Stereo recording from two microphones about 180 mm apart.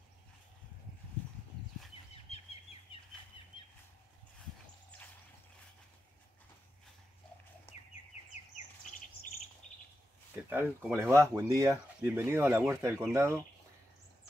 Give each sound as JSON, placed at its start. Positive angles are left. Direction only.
{"t": 2.3, "sound": "bird", "side_deg": 35}
{"t": 2.9, "sound": "bird flight", "side_deg": 30}
{"t": 10.3, "sound": "speech", "side_deg": -10}